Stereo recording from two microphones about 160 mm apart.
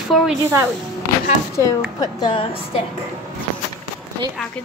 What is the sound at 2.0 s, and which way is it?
Speech, 25° left (ahead or behind).